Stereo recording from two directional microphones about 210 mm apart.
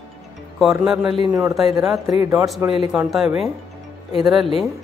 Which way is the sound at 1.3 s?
15° right (ahead or behind).